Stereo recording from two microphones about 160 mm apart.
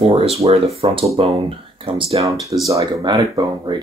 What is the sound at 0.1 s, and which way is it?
Speech, 40° right (ahead or behind).